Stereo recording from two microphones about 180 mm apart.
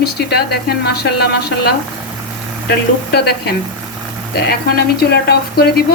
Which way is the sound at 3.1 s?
65° left (ahead or behind).